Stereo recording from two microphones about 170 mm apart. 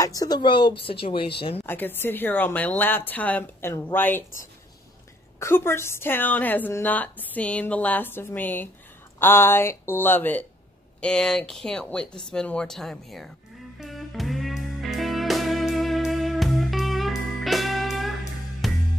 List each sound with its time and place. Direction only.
0.0 s speech: 20° left (ahead or behind)
1.7 s a woman's voice: 10° left (ahead or behind)
13.7 s music: centre (ahead or behind)